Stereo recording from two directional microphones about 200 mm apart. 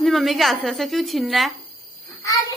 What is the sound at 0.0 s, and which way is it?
A woman's voice, centre (ahead or behind).